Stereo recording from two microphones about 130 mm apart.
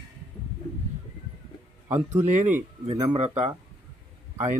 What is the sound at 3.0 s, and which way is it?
Speech, 50° right (ahead or behind).